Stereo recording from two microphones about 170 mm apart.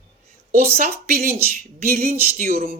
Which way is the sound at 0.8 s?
60° right (ahead or behind).